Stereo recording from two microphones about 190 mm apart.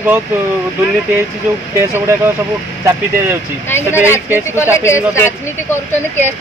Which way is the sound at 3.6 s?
10° left (ahead or behind).